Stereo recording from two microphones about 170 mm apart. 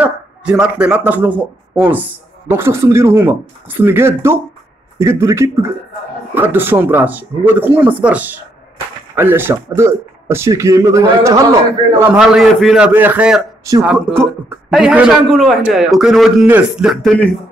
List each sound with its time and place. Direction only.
0.0 s speech: 5° right (ahead or behind)
12.1 s a man's voice: 5° right (ahead or behind)